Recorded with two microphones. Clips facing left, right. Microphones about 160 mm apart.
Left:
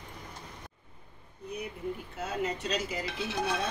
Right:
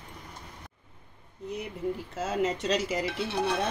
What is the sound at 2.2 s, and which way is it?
Speech, 90° right.